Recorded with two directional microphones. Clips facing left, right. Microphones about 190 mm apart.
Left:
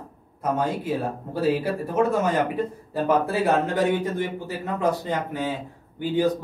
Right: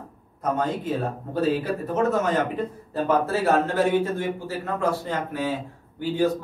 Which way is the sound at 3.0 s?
15° left (ahead or behind).